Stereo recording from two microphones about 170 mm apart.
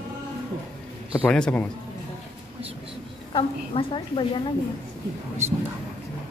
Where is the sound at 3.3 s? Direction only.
30° left (ahead or behind).